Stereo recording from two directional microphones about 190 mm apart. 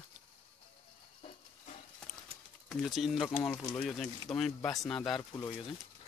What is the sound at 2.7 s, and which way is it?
Speech, centre (ahead or behind).